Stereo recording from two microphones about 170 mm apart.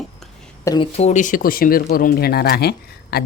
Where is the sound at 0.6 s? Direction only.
20° left (ahead or behind).